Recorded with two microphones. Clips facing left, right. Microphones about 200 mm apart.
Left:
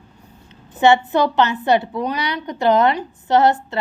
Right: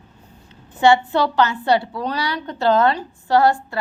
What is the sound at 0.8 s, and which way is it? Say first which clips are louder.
A woman's voice: left 1 dB; 20° left (ahead or behind).